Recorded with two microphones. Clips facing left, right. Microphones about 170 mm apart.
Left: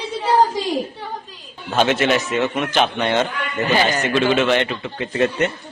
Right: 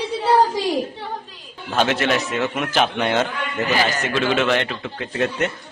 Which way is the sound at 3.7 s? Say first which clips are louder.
Left 3 dB; 20° left (ahead or behind).